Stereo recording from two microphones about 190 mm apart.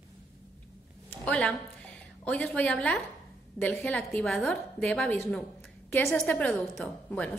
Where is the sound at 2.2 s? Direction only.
5° left (ahead or behind).